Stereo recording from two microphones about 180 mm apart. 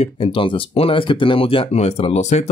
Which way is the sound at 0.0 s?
30° left (ahead or behind).